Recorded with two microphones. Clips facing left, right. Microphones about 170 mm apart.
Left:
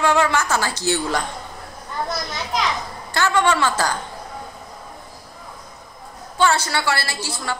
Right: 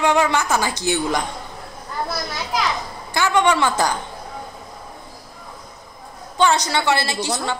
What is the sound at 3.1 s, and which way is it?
Speech, 15° right (ahead or behind).